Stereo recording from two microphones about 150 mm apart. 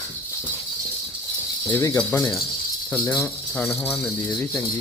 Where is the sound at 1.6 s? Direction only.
20° left (ahead or behind).